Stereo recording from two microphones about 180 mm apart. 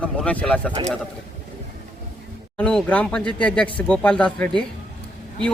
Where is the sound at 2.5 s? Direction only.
5° left (ahead or behind).